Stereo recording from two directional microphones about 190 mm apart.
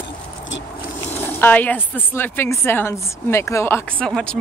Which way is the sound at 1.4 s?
10° left (ahead or behind).